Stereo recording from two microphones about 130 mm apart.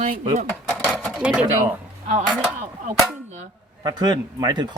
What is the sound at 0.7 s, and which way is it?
Sewing machine, 5° left (ahead or behind).